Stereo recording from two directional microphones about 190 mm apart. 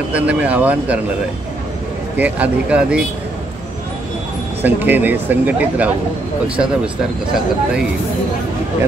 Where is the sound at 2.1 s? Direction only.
10° right (ahead or behind).